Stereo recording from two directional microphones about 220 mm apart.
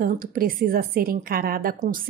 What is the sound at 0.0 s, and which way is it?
A woman's voice, 40° right (ahead or behind).